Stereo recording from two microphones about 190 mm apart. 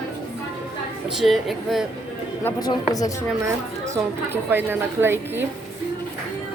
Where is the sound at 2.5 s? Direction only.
20° left (ahead or behind).